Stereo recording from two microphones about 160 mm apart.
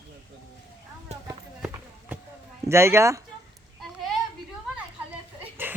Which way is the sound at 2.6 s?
15° right (ahead or behind).